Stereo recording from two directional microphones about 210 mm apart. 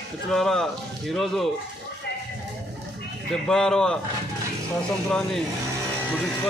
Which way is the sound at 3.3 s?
Centre (ahead or behind).